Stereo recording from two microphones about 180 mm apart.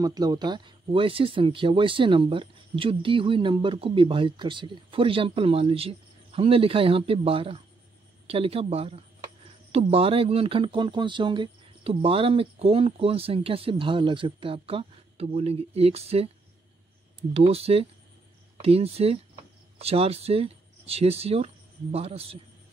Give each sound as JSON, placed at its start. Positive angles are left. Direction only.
{"t": 0.0, "sound": "speech", "side_deg": -20}
{"t": 17.3, "sound": "speech", "side_deg": -35}